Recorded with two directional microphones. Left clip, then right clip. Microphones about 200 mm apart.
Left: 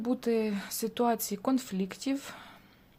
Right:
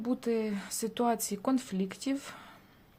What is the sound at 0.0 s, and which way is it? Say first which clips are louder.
Speech: left 2 dB; 10° left (ahead or behind).